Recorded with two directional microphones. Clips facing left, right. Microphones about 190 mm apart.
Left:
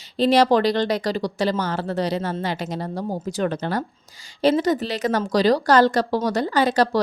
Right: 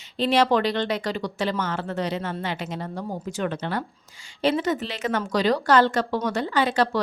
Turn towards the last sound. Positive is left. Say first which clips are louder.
# left 3 dB
turn(degrees=40)  # may be behind; listen again after turning